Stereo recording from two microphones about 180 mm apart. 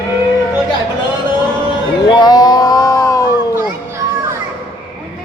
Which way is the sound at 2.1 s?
25° left (ahead or behind).